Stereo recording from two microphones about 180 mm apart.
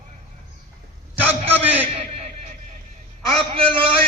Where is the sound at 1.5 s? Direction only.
10° right (ahead or behind).